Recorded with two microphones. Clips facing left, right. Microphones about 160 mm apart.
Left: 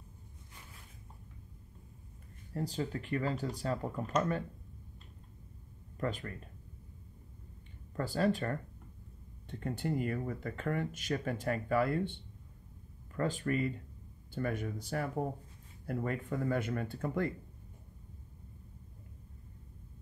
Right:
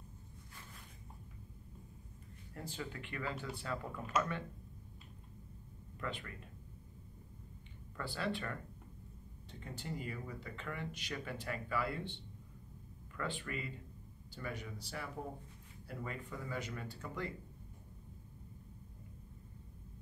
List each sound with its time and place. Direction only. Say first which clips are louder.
2.5 s speech: left 9 dB; 35° left (ahead or behind)
5.9 s speech: left 7 dB; 40° left (ahead or behind)
7.9 s speech: left 8 dB; 45° left (ahead or behind)
9.5 s speech: left 10 dB; 55° left (ahead or behind)